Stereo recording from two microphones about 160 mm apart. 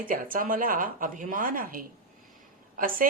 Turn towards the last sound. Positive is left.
turn(degrees=-60)  # may be behind; listen again after turning